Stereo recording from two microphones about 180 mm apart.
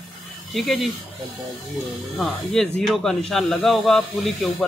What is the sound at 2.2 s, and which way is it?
Speech, centre (ahead or behind).